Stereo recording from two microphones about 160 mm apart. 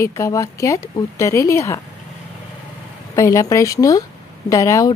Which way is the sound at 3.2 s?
20° left (ahead or behind).